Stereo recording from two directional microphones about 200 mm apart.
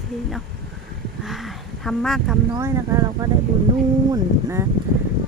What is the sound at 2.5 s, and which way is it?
Speech, 15° right (ahead or behind).